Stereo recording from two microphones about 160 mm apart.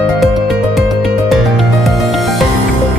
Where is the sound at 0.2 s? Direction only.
Centre (ahead or behind).